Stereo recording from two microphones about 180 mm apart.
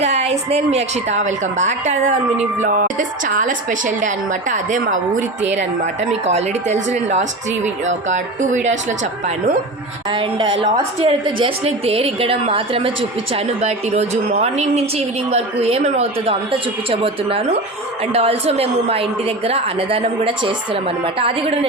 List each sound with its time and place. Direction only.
0.0 s a woman's voice: 35° right (ahead or behind)
6.2 s a woman's voice: 35° right (ahead or behind)
10.1 s a woman's voice: 30° right (ahead or behind)